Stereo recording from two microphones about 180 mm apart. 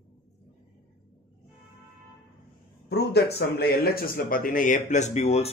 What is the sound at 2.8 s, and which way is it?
Speech, 65° left (ahead or behind).